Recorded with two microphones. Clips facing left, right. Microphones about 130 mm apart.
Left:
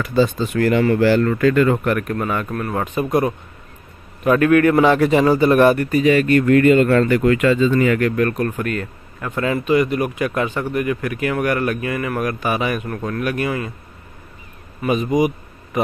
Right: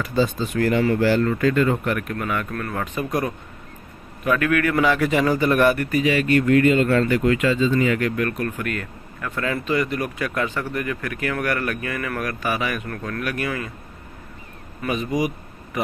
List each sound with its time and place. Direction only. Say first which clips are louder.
0.0 s speech: left 4 dB; 75° left (ahead or behind)
1.9 s speech: left 5 dB; 45° left (ahead or behind)
2.1 s a man's voice: left 3 dB; 30° left (ahead or behind)
2.5 s a man's voice: left 5 dB; 20° left (ahead or behind)
6.1 s speech: left 2 dB; 45° left (ahead or behind)
8.2 s speech: left 5 dB; 35° left (ahead or behind)
14.8 s a man's voice: left 6 dB; 20° left (ahead or behind)